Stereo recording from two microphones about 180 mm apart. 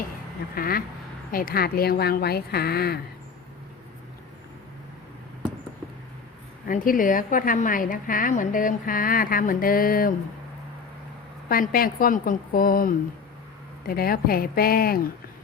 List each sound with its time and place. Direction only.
0.5 s a woman's voice: 55° left (ahead or behind)
6.7 s a woman's voice: 50° left (ahead or behind)
11.4 s a woman's voice: 50° left (ahead or behind)